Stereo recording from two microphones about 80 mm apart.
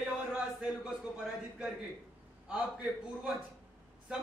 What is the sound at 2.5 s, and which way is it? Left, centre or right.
Speech, centre.